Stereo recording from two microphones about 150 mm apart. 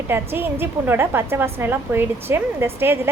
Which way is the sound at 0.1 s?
15° right (ahead or behind).